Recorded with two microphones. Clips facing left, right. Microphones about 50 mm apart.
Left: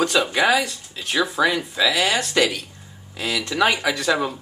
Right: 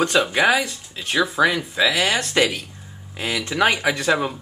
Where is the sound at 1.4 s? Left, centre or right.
Centre.